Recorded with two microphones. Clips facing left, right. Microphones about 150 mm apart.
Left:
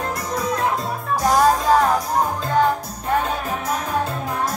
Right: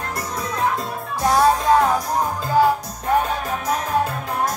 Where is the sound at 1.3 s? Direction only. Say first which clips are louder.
Even; centre (ahead or behind).